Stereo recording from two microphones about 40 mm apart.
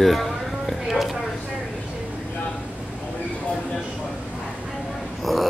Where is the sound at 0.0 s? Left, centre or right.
Centre.